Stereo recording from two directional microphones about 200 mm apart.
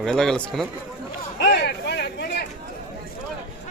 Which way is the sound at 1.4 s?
55° left (ahead or behind).